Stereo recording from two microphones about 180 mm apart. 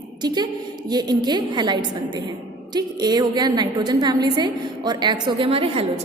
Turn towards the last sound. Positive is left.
turn(degrees=-30)  # may be behind; listen again after turning